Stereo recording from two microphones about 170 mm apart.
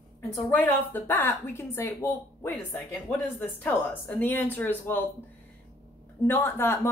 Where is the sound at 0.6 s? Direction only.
10° left (ahead or behind).